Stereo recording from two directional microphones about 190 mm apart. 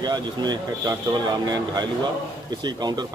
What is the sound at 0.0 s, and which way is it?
Speech, 20° right (ahead or behind).